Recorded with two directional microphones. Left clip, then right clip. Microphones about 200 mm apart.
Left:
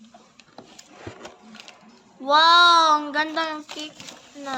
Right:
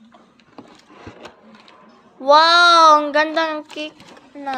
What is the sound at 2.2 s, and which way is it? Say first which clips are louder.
A child's voice: right 4 dB; 20° right (ahead or behind).